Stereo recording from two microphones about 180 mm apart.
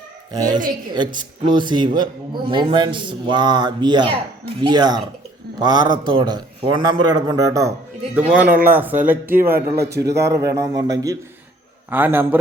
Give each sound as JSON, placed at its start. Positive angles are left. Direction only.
{"t": 0.3, "sound": "a man's voice", "side_deg": -20}